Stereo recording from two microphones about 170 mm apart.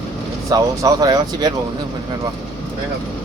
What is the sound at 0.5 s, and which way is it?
Speech, 20° right (ahead or behind).